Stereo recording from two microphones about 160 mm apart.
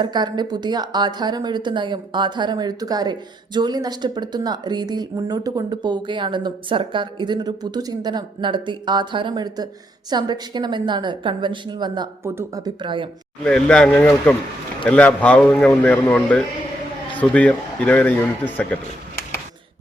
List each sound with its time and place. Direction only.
0.0 s a woman's voice: 25° right (ahead or behind)
12.2 s a woman's voice: 15° right (ahead or behind)
13.4 s a man's voice: 5° left (ahead or behind)